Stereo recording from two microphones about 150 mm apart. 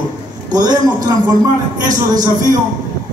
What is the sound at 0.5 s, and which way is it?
Speech, 30° right (ahead or behind).